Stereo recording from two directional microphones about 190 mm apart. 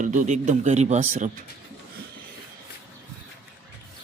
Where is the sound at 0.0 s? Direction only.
40° right (ahead or behind).